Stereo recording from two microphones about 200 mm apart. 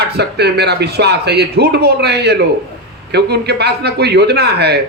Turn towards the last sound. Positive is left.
turn(degrees=-55)  # may be behind; listen again after turning